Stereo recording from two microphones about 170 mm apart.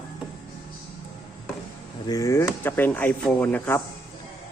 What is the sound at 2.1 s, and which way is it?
A man's voice, 20° left (ahead or behind).